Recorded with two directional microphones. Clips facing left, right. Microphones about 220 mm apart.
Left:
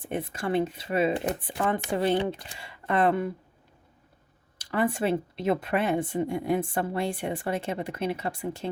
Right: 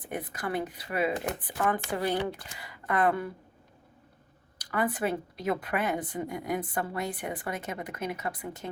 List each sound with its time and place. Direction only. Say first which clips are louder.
0.0 s speech: left 4 dB; 25° left (ahead or behind)
4.5 s speech: left 3 dB; 25° left (ahead or behind)